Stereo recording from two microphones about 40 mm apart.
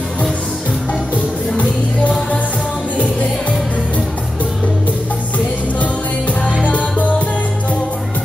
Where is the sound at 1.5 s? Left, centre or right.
Left.